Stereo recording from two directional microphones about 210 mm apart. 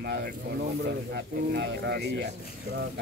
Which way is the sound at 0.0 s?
50° right (ahead or behind).